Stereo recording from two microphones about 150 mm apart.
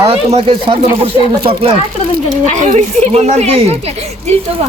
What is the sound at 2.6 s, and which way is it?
Speech, 45° right (ahead or behind).